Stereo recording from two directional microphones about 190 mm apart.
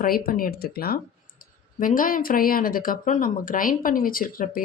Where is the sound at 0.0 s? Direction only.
50° left (ahead or behind).